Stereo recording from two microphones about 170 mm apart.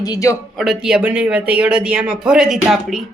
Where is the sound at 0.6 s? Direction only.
5° right (ahead or behind).